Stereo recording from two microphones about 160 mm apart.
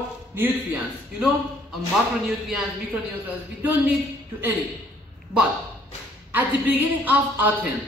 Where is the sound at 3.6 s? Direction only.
10° right (ahead or behind).